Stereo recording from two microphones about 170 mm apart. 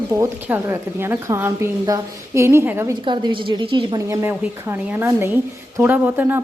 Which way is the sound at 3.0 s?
30° right (ahead or behind).